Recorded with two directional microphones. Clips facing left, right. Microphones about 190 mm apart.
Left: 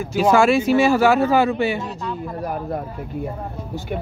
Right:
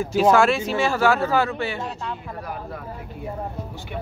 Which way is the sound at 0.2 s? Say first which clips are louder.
Left 2 dB; centre (ahead or behind).